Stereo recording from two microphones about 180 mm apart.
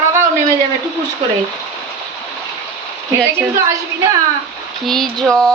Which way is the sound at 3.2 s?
15° right (ahead or behind).